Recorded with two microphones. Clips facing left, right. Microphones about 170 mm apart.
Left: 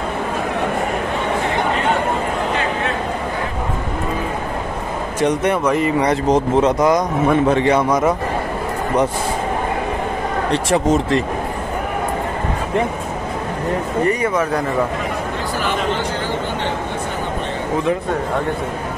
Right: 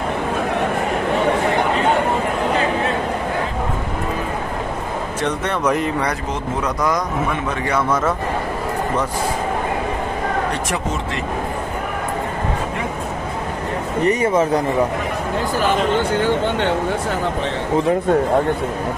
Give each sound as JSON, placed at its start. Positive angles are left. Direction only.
{"t": 5.2, "sound": "a man's voice", "side_deg": 15}
{"t": 5.7, "sound": "speech", "side_deg": 0}
{"t": 6.6, "sound": "a man's voice", "side_deg": 20}
{"t": 10.7, "sound": "speech", "side_deg": 35}
{"t": 14.0, "sound": "speech", "side_deg": -25}